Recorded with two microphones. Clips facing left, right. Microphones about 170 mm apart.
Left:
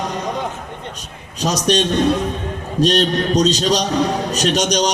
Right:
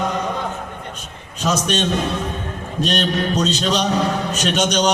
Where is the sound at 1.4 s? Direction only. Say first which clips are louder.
Left 2 dB; 35° left (ahead or behind).